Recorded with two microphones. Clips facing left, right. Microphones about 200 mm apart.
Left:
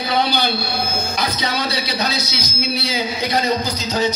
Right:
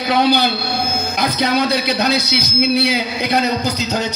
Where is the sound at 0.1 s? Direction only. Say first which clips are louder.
Right 5 dB; 60° right (ahead or behind).